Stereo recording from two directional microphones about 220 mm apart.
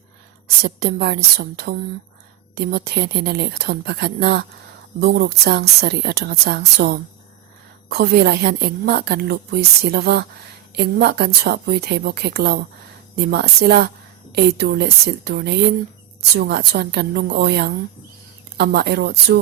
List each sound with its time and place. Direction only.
0.6 s a woman's voice: 45° right (ahead or behind)